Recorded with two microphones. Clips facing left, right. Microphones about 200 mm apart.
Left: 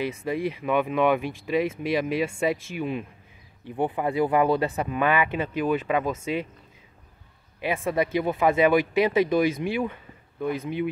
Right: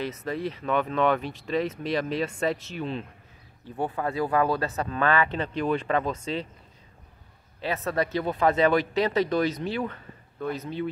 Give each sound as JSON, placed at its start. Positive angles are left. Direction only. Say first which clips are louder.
{"t": 0.0, "sound": "speech", "louder": "left 3 dB", "side_deg": 10}
{"t": 7.6, "sound": "speech", "louder": "left 2 dB", "side_deg": 10}